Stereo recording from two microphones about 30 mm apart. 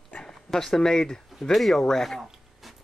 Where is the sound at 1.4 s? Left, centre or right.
Centre.